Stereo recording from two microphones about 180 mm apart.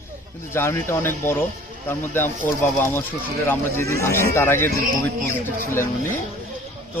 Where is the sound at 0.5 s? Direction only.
15° left (ahead or behind).